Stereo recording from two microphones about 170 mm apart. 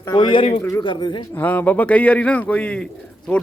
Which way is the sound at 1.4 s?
10° left (ahead or behind).